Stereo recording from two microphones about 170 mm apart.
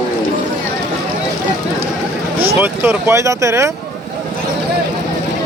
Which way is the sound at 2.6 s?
10° right (ahead or behind).